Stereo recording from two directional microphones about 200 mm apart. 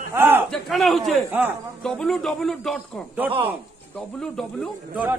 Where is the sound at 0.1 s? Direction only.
10° right (ahead or behind).